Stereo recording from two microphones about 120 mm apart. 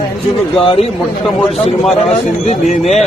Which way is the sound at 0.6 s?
50° left (ahead or behind).